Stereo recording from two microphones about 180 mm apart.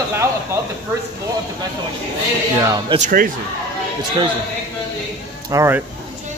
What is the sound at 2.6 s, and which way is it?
Speech, 20° right (ahead or behind).